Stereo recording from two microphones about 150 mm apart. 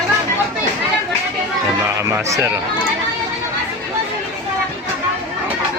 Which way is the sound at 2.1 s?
15° right (ahead or behind).